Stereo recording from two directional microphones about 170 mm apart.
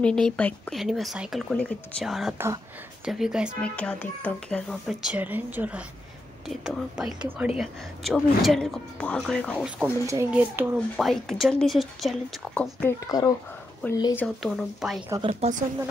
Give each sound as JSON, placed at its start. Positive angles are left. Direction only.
{"t": 0.4, "sound": "speech", "side_deg": 5}
{"t": 1.5, "sound": "speech", "side_deg": 5}
{"t": 2.3, "sound": "speech", "side_deg": -15}
{"t": 3.1, "sound": "speech", "side_deg": -5}
{"t": 3.6, "sound": "speech", "side_deg": 5}
{"t": 9.8, "sound": "speech", "side_deg": -15}
{"t": 11.0, "sound": "speech", "side_deg": 0}
{"t": 12.8, "sound": "speech", "side_deg": 20}
{"t": 14.1, "sound": "speech", "side_deg": 5}
{"t": 15.2, "sound": "speech", "side_deg": -40}